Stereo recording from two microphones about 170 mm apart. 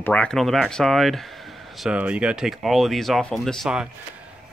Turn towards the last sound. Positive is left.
turn(degrees=0)  # may be behind; listen again after turning